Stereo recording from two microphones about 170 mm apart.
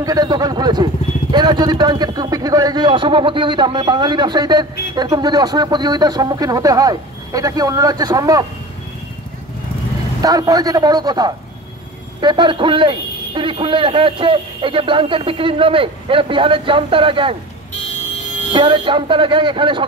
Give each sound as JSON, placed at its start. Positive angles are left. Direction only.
{"t": 0.0, "sound": "a man's voice", "side_deg": -20}
{"t": 10.2, "sound": "a man's voice", "side_deg": -20}
{"t": 18.5, "sound": "a man's voice", "side_deg": -30}